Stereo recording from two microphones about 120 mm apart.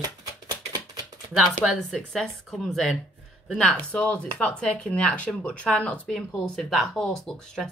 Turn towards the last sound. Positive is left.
turn(degrees=5)  # may be behind; listen again after turning